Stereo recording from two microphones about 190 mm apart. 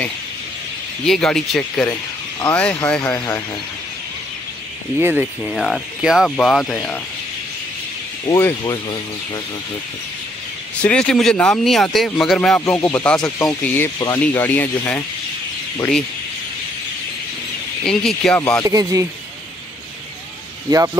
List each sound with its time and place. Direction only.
1.0 s speech: centre (ahead or behind)
4.9 s speech: 10° right (ahead or behind)
8.3 s speech: 15° left (ahead or behind)
10.8 s speech: 5° left (ahead or behind)
13.5 s speech: 15° left (ahead or behind)
17.8 s speech: 5° left (ahead or behind)
18.7 s speech: 15° right (ahead or behind)
20.7 s speech: 15° right (ahead or behind)